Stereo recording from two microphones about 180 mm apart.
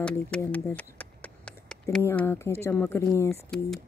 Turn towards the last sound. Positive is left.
turn(degrees=0)  # may be behind; listen again after turning